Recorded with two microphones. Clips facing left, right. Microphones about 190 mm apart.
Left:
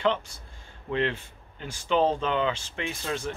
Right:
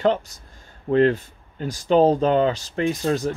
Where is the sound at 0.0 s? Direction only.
40° right (ahead or behind).